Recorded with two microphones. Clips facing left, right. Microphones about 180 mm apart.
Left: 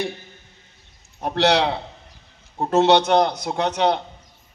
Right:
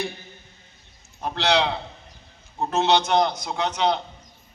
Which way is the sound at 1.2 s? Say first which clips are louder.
Left 4 dB; 70° left (ahead or behind).